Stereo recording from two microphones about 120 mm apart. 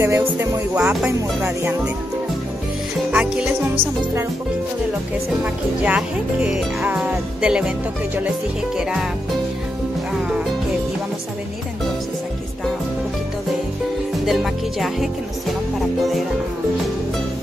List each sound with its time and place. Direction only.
0.0 s speech: 20° right (ahead or behind)
0.7 s speech: 10° right (ahead or behind)
3.1 s speech: 10° right (ahead or behind)
5.4 s speech: 10° right (ahead or behind)
10.1 s music: 5° right (ahead or behind)
14.2 s music: centre (ahead or behind)